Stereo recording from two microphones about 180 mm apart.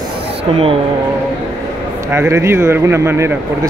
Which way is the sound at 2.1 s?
15° right (ahead or behind).